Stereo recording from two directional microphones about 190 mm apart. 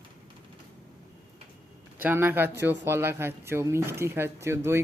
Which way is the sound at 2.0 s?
10° right (ahead or behind).